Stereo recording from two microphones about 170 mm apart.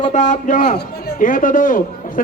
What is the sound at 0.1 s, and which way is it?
A man's voice, 50° left (ahead or behind).